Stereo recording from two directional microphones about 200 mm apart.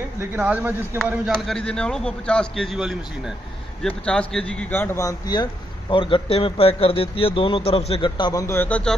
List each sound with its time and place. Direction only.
0.2 s speech: 10° right (ahead or behind)